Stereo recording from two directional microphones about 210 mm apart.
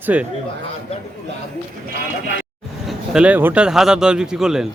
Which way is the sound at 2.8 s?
5° right (ahead or behind).